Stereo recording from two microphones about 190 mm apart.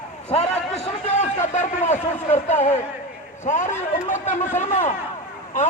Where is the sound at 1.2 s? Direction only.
40° left (ahead or behind).